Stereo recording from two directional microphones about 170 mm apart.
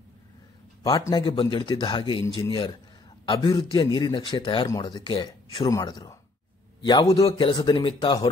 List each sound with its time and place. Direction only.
0.8 s a man's voice: 20° left (ahead or behind)